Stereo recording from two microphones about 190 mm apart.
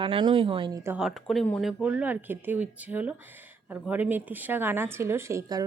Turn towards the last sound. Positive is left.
turn(degrees=-15)  # may be behind; listen again after turning